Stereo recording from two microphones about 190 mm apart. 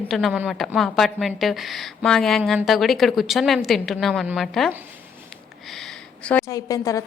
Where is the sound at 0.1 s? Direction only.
Centre (ahead or behind).